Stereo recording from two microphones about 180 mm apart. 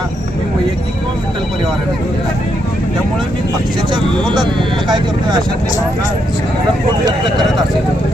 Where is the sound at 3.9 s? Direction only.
25° right (ahead or behind).